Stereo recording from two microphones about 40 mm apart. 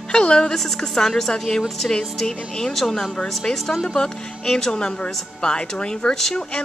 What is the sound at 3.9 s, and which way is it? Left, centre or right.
Speech, centre.